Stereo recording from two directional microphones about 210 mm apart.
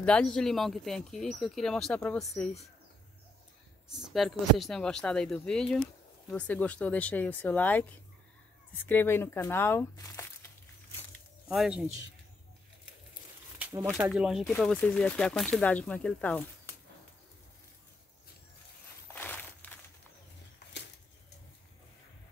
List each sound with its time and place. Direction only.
0.0 s speech: 5° left (ahead or behind)
3.9 s speech: centre (ahead or behind)
8.8 s speech: 10° left (ahead or behind)
11.5 s speech: 5° right (ahead or behind)
13.6 s speech: 10° right (ahead or behind)
19.1 s walk: 10° left (ahead or behind)